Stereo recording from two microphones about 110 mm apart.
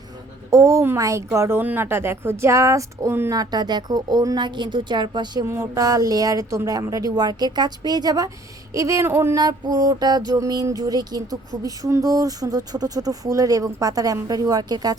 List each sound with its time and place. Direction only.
0.5 s a woman's voice: 30° right (ahead or behind)
3.3 s music: 35° right (ahead or behind)
5.5 s music: 30° right (ahead or behind)
8.7 s a woman's voice: 30° right (ahead or behind)
9.4 s music: 35° right (ahead or behind)